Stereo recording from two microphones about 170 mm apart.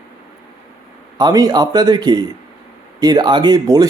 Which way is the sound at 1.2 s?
20° right (ahead or behind).